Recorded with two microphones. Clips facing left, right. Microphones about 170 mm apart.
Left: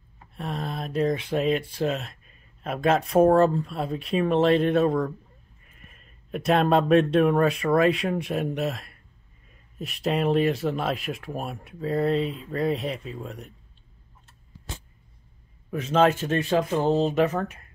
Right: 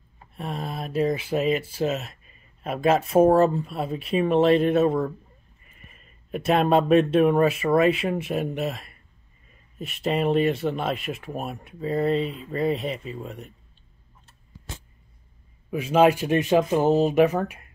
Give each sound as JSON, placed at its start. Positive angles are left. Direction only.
{"t": 0.4, "sound": "speech", "side_deg": 0}
{"t": 15.7, "sound": "speech", "side_deg": -10}